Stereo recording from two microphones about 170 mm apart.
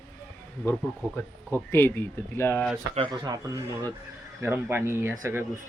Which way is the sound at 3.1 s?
20° right (ahead or behind).